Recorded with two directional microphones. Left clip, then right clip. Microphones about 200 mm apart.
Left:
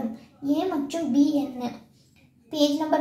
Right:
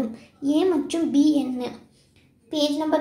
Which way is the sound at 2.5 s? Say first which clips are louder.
Even; 15° right (ahead or behind).